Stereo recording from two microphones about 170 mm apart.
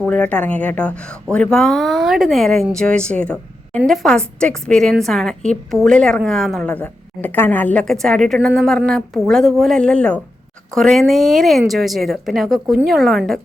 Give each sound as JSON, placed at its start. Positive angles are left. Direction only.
{"t": 0.0, "sound": "a woman's voice", "side_deg": 5}